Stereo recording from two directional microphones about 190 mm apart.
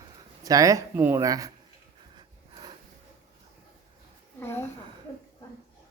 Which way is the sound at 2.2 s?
25° right (ahead or behind).